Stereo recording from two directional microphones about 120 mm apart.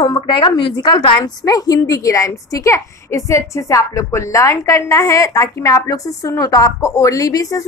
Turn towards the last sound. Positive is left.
turn(degrees=30)  # may be behind; listen again after turning